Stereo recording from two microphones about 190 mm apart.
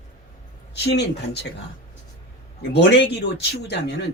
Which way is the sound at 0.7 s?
60° left (ahead or behind).